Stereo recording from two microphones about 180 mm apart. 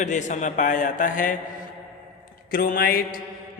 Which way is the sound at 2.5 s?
55° left (ahead or behind).